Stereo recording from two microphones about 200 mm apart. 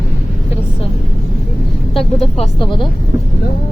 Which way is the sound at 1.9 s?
25° left (ahead or behind).